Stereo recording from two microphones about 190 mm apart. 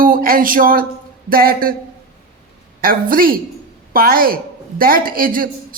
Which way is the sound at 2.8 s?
50° right (ahead or behind).